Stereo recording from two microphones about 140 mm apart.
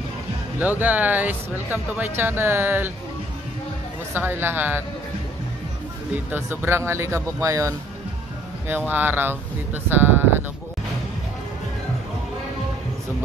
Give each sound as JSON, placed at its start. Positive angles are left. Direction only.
{"t": 0.6, "sound": "speech", "side_deg": -10}
{"t": 4.1, "sound": "speech", "side_deg": -15}
{"t": 6.3, "sound": "speech", "side_deg": -15}